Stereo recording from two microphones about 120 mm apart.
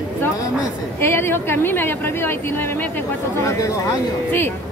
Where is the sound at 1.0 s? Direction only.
20° left (ahead or behind).